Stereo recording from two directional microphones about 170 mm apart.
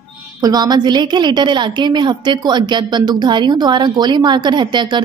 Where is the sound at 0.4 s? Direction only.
25° right (ahead or behind).